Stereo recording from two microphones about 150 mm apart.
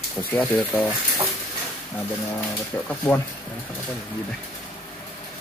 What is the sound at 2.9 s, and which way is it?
Speech, 10° left (ahead or behind).